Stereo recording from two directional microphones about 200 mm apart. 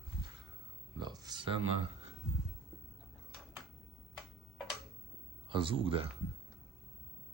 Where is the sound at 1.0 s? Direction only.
20° right (ahead or behind).